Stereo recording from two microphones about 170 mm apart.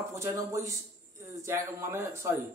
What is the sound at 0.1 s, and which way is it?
Speech, 20° right (ahead or behind).